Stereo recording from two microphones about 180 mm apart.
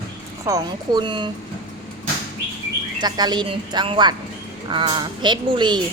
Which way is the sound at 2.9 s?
20° right (ahead or behind).